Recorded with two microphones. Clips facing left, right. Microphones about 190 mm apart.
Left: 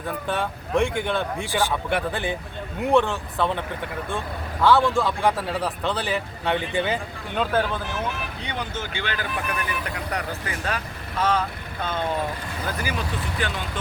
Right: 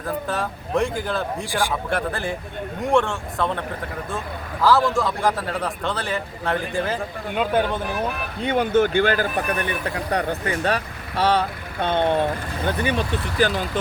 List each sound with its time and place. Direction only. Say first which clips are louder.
0.0 s a man's voice: right 1 dB; centre (ahead or behind)
4.6 s a man's voice: even; centre (ahead or behind)
7.5 s speech: right 3 dB; 20° right (ahead or behind)
7.9 s speech: right 3 dB; 55° right (ahead or behind); by 13.5 s 30° right (ahead or behind)